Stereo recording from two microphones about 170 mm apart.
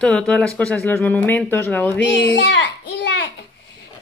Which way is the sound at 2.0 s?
90° left.